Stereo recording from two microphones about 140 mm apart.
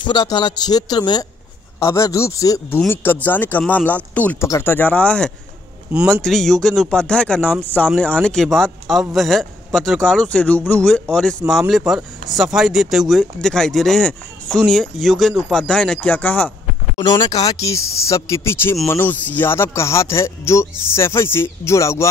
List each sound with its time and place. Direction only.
0.0 s a man's voice: 30° left (ahead or behind); by 5.3 s 10° left (ahead or behind)
5.9 s speech: 15° right (ahead or behind)
6.2 s speech: 5° left (ahead or behind)
17.0 s speech: 30° left (ahead or behind)